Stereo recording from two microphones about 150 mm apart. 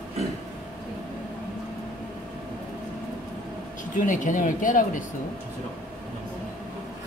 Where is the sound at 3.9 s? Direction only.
60° left (ahead or behind).